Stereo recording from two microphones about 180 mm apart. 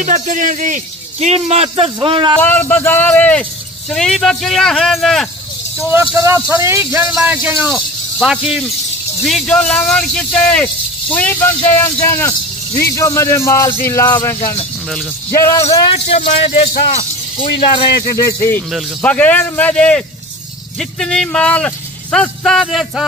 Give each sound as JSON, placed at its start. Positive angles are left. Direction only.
{"t": 0.0, "sound": "a man's voice", "side_deg": -45}
{"t": 2.4, "sound": "speech", "side_deg": 10}
{"t": 5.9, "sound": "speech", "side_deg": -15}
{"t": 16.1, "sound": "speech", "side_deg": 35}
{"t": 21.0, "sound": "speech", "side_deg": 5}